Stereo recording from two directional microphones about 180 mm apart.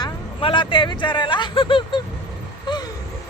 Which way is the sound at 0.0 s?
25° left (ahead or behind).